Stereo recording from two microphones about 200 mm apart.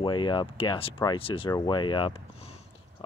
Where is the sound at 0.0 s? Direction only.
25° left (ahead or behind).